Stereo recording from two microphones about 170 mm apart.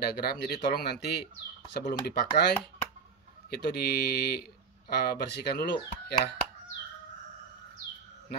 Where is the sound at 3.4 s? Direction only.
65° left (ahead or behind).